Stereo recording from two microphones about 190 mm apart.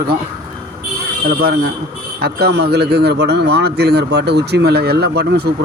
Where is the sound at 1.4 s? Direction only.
55° right (ahead or behind).